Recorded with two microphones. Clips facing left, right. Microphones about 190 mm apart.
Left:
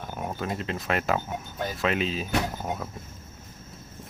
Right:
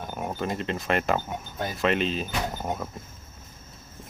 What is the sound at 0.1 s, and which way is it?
Speech, centre (ahead or behind).